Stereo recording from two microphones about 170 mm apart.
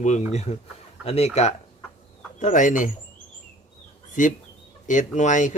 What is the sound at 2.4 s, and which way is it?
Speech, 50° left (ahead or behind).